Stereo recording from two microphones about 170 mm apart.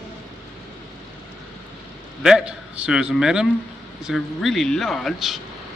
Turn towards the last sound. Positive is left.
turn(degrees=0)  # may be behind; listen again after turning